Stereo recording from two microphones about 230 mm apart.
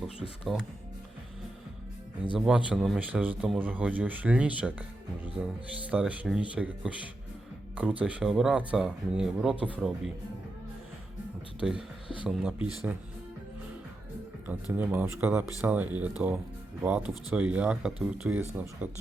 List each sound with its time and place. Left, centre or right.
0.2 s speech: centre
2.6 s speech: centre
11.6 s speech: centre
12.0 s speech: left
12.3 s speech: centre
14.4 s speech: centre